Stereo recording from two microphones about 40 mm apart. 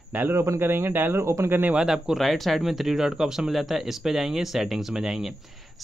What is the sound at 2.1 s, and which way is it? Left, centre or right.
Speech, centre.